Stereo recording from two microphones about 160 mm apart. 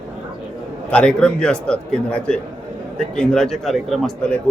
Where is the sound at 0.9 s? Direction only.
5° left (ahead or behind).